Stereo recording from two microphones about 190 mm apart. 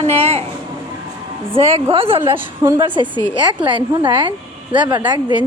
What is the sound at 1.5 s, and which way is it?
Speech, 30° right (ahead or behind).